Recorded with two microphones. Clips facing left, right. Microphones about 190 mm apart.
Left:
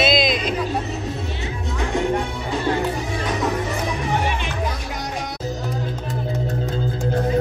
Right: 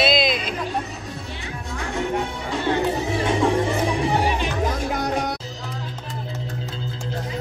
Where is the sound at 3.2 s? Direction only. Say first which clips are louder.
Right 4 dB; 30° right (ahead or behind).